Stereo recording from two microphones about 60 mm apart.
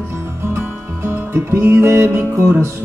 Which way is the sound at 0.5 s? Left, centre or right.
Right.